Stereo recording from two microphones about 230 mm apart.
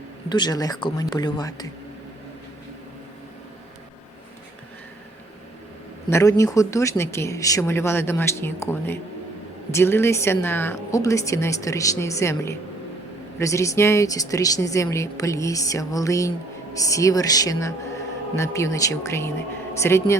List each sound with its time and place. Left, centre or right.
0.3 s speech: centre
6.1 s speech: centre